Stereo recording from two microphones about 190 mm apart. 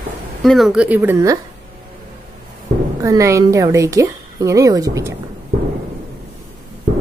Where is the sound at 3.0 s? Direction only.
15° right (ahead or behind).